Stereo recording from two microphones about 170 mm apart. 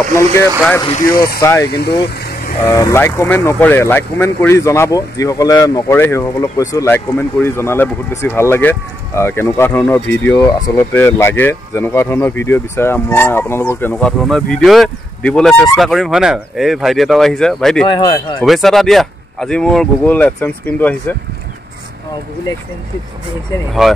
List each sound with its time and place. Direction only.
0.0 s speech: 15° left (ahead or behind)
1.7 s speech: 70° left (ahead or behind)
2.6 s speech: 20° left (ahead or behind); by 17.8 s centre (ahead or behind)
17.8 s speech: 25° left (ahead or behind)
18.4 s speech: centre (ahead or behind)